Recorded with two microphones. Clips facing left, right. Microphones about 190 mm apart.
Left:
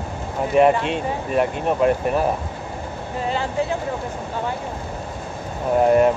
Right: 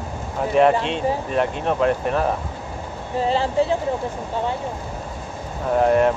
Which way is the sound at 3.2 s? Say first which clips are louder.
Right 3 dB; 30° right (ahead or behind).